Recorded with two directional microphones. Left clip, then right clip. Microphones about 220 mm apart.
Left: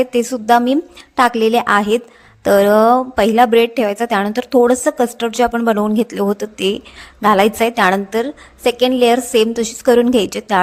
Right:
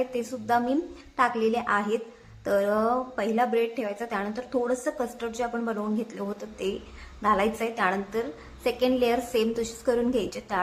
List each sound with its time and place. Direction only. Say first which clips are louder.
0.0 s a woman's voice: left 13 dB; 40° left (ahead or behind)